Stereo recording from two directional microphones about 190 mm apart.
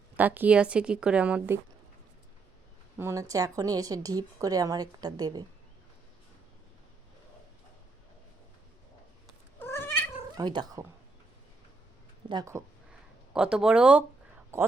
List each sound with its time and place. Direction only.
0.2 s a woman's voice: 10° right (ahead or behind)
3.0 s a woman's voice: 15° right (ahead or behind)
9.6 s cat: 10° left (ahead or behind)
10.3 s a woman's voice: 20° right (ahead or behind)
12.3 s a woman's voice: 20° right (ahead or behind)
13.3 s a woman's voice: 5° right (ahead or behind)